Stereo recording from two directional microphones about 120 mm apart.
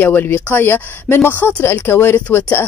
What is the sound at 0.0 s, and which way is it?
Speech, 15° left (ahead or behind).